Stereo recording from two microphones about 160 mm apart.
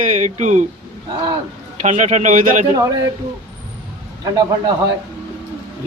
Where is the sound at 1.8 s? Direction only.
50° right (ahead or behind).